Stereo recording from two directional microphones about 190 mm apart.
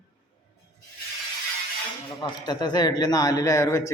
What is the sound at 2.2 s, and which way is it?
A man's voice, 20° left (ahead or behind).